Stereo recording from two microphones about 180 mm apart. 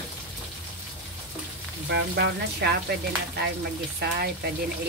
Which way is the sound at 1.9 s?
65° right (ahead or behind).